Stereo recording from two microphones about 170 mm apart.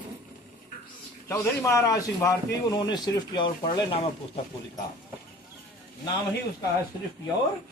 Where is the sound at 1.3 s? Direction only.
20° left (ahead or behind).